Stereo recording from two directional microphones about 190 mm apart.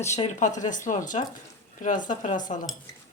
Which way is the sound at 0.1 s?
40° left (ahead or behind).